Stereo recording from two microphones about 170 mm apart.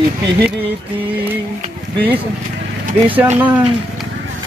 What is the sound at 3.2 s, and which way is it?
Speech, 10° right (ahead or behind).